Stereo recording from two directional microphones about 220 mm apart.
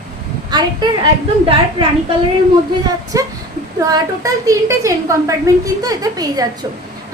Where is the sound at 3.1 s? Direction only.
15° right (ahead or behind).